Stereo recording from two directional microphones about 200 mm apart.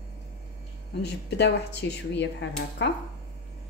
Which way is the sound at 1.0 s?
55° left (ahead or behind).